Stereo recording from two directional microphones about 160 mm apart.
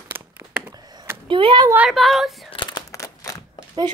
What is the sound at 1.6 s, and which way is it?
Speech, 5° right (ahead or behind).